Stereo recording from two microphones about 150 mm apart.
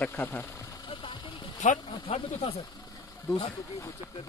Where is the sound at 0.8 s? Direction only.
35° left (ahead or behind).